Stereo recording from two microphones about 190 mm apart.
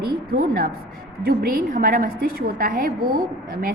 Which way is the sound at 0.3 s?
55° right (ahead or behind).